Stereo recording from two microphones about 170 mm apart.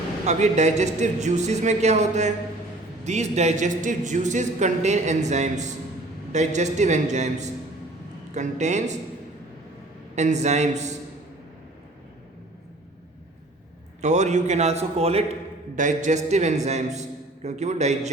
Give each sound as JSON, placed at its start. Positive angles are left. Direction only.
{"t": 0.3, "sound": "speech", "side_deg": -40}
{"t": 10.2, "sound": "speech", "side_deg": -40}
{"t": 14.0, "sound": "a man's voice", "side_deg": -45}